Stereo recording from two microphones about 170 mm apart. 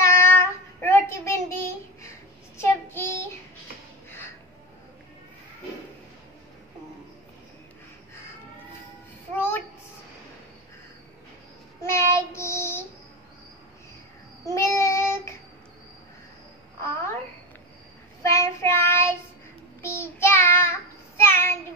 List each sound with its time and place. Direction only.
0.0 s child singing: 15° left (ahead or behind)
11.8 s child singing: 15° left (ahead or behind)
14.4 s child singing: 15° left (ahead or behind)
16.8 s babbling: 15° left (ahead or behind)
18.2 s child singing: 15° left (ahead or behind)